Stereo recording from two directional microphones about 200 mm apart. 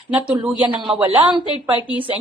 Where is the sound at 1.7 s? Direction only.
10° right (ahead or behind).